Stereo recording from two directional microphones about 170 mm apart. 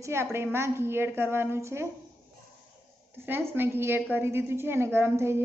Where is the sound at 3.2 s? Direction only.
10° right (ahead or behind).